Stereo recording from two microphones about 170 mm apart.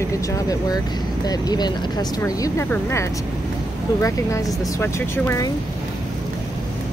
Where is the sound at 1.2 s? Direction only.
25° left (ahead or behind).